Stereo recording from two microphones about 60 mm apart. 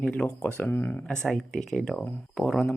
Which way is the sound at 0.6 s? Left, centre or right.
Left.